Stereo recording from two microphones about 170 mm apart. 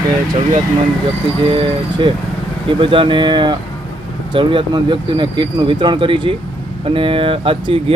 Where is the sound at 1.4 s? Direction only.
30° right (ahead or behind).